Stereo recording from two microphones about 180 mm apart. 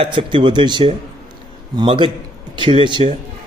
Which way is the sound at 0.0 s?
25° right (ahead or behind).